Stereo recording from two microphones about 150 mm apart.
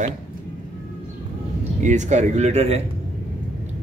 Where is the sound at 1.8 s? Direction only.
55° right (ahead or behind).